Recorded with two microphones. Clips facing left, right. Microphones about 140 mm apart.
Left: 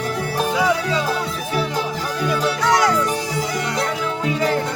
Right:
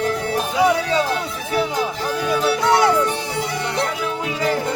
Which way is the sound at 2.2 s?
25° right (ahead or behind).